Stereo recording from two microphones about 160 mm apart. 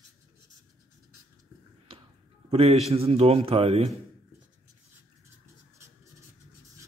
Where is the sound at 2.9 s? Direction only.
40° right (ahead or behind).